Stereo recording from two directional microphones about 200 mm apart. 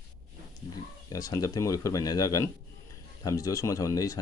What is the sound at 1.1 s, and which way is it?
Speech, 20° left (ahead or behind).